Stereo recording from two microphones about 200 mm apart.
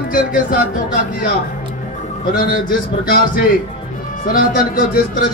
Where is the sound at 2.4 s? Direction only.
45° left (ahead or behind).